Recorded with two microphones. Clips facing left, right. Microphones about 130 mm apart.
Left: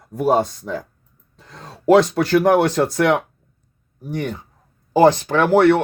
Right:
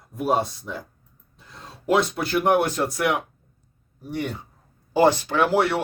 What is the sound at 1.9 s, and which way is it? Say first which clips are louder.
Speech: left 8 dB; 90° left.